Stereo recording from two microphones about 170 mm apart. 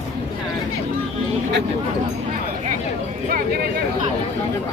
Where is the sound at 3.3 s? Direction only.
60° right (ahead or behind).